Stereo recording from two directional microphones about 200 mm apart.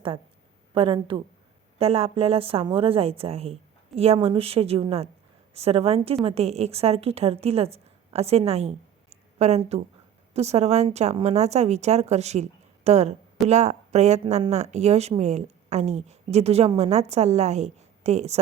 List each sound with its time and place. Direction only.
0.7 s a woman's voice: 25° right (ahead or behind)